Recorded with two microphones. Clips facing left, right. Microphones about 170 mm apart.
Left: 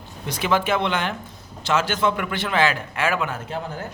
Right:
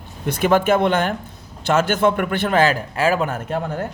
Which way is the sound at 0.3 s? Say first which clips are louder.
Right 6 dB; 50° right (ahead or behind).